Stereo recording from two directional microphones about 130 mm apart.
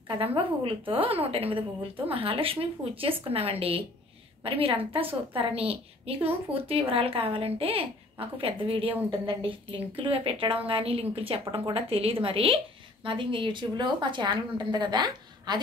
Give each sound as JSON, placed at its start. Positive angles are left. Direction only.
{"t": 0.2, "sound": "a child's voice", "side_deg": -45}